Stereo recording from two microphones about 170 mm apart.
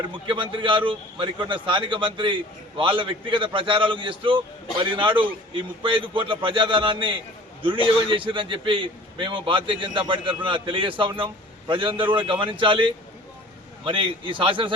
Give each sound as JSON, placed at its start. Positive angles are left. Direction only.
{"t": 0.1, "sound": "a man's voice", "side_deg": -30}